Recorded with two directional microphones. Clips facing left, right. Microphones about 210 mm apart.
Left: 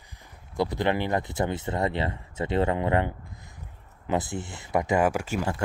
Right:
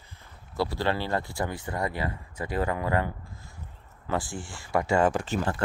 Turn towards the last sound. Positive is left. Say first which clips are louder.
# even
turn(degrees=10)  # may be behind; listen again after turning